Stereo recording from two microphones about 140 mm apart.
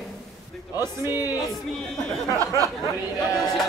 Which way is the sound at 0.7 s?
15° right (ahead or behind).